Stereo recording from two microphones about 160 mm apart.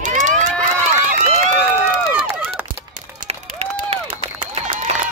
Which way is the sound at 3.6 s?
40° right (ahead or behind).